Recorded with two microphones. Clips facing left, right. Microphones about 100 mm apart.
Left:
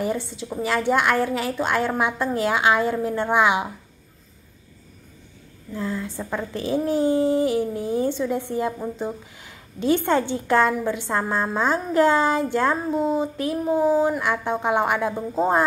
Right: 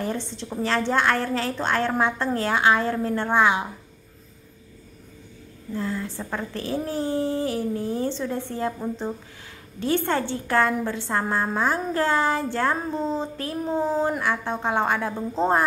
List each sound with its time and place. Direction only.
0.0 s a woman's voice: 10° left (ahead or behind)
5.8 s a woman's voice: 15° left (ahead or behind)